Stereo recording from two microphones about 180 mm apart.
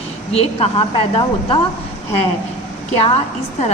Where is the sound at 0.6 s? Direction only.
30° left (ahead or behind).